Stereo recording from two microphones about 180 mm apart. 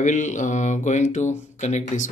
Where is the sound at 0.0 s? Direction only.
45° left (ahead or behind).